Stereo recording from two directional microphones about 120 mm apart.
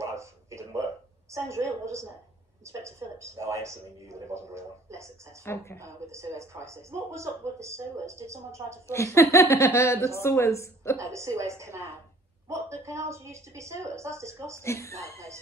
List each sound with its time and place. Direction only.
0.0 s a sound: 25° right (ahead or behind)
1.3 s a woman's voice: 25° right (ahead or behind)
5.4 s speech: 20° left (ahead or behind)
5.8 s a woman's voice: 25° right (ahead or behind)
8.8 s speech: 25° left (ahead or behind)
11.0 s a woman's voice: 25° right (ahead or behind)
12.4 s a sound: 25° right (ahead or behind)
12.8 s a woman's voice: 25° right (ahead or behind)
14.6 s speech: 25° left (ahead or behind)
15.1 s a woman's voice: 25° right (ahead or behind)